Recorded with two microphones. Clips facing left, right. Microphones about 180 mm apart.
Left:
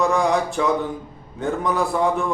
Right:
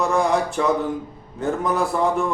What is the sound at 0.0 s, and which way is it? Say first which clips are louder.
A man's voice: even; centre (ahead or behind).